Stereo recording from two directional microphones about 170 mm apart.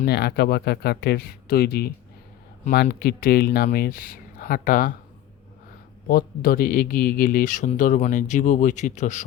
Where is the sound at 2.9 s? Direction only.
65° left (ahead or behind).